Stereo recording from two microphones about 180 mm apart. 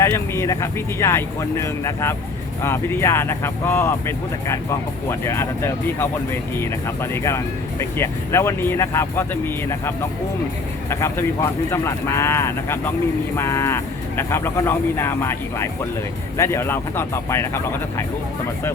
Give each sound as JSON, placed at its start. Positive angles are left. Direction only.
{"t": 0.0, "sound": "speech", "side_deg": 15}